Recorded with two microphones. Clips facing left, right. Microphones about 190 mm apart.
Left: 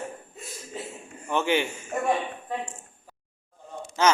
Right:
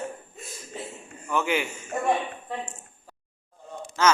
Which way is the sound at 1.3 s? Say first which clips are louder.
Left 2 dB; 30° left (ahead or behind).